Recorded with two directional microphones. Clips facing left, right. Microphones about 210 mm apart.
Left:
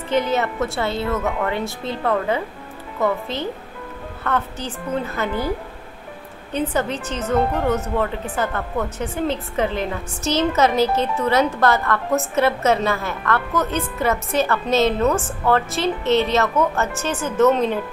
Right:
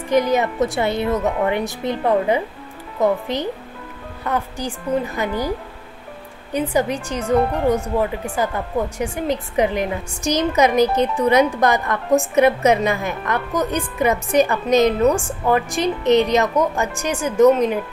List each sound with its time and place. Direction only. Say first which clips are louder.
0.1 s a woman's voice: right 3 dB; 15° right (ahead or behind)
6.5 s a woman's voice: right 2 dB; 15° right (ahead or behind)